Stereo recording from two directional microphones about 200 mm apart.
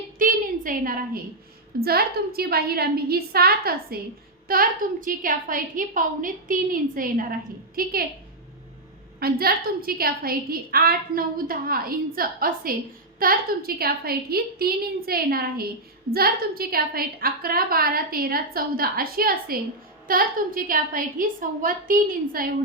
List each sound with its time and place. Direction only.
0.2 s a sound: 40° right (ahead or behind)
1.8 s a woman's voice: 50° right (ahead or behind)
9.2 s a woman's voice: 50° right (ahead or behind)